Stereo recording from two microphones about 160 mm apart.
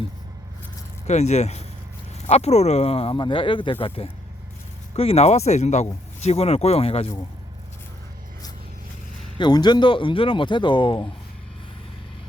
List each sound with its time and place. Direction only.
1.0 s speech: 45° left (ahead or behind)
9.4 s speech: 25° left (ahead or behind)